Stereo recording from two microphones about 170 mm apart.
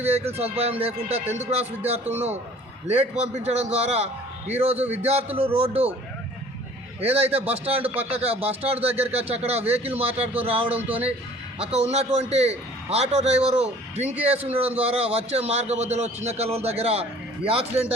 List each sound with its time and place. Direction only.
0.0 s a man's voice: 35° right (ahead or behind)
7.0 s a man's voice: 35° right (ahead or behind)
10.8 s speech: 10° right (ahead or behind)
11.6 s a man's voice: 40° right (ahead or behind)